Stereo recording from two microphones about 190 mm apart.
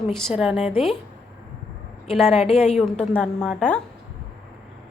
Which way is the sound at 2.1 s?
Centre (ahead or behind).